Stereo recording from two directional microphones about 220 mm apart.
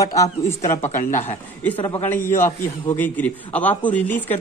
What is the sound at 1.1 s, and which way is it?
A man's voice, 10° left (ahead or behind).